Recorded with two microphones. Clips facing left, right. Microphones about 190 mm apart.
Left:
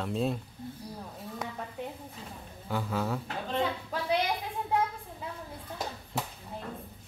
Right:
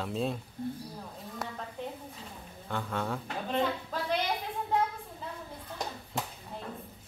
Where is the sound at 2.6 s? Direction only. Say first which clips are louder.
Left 2 dB; 5° left (ahead or behind).